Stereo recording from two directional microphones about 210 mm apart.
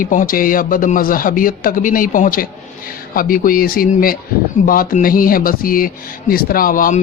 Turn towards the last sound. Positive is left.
turn(degrees=40)  # may be behind; listen again after turning